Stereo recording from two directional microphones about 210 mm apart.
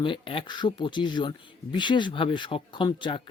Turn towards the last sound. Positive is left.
turn(degrees=20)  # may be behind; listen again after turning